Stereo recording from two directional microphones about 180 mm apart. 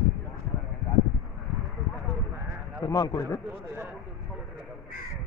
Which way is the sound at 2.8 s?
20° left (ahead or behind).